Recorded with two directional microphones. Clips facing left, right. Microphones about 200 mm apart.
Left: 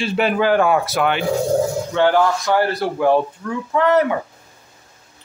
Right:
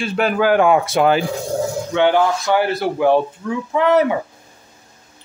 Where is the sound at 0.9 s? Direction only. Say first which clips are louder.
Right 4 dB; 35° right (ahead or behind).